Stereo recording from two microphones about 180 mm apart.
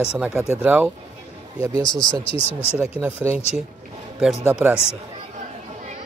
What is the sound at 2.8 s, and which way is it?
Speech, 15° right (ahead or behind).